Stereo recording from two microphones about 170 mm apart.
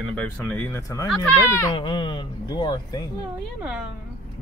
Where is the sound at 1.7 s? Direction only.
30° left (ahead or behind).